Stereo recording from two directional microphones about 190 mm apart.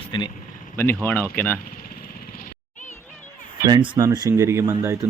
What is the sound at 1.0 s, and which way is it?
Speech, 10° left (ahead or behind).